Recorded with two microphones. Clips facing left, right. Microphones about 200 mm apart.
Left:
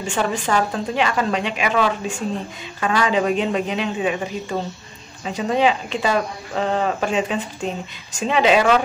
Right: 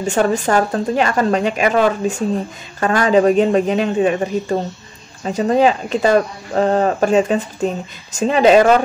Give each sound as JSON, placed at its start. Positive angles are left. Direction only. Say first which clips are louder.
{"t": 0.0, "sound": "speech", "louder": "right 6 dB", "side_deg": -40}